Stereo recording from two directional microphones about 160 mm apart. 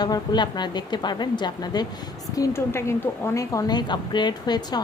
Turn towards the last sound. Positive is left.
turn(degrees=25)  # may be behind; listen again after turning